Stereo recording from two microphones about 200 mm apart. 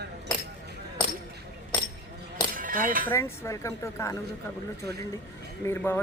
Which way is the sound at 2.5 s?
45° right (ahead or behind).